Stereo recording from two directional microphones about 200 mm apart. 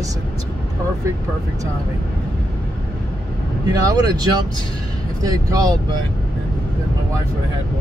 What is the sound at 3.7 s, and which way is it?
Speech, 20° right (ahead or behind).